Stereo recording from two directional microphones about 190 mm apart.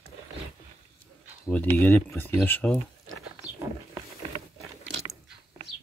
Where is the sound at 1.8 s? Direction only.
10° left (ahead or behind).